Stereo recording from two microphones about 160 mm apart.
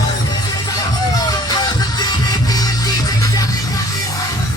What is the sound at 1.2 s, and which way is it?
Music, 25° left (ahead or behind).